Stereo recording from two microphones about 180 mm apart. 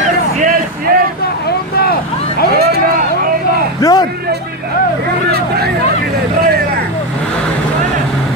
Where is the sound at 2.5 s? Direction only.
60° right (ahead or behind).